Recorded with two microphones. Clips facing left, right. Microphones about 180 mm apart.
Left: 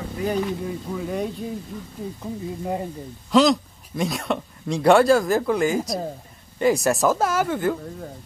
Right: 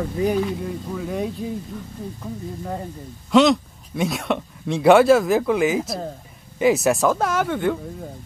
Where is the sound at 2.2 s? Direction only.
10° left (ahead or behind).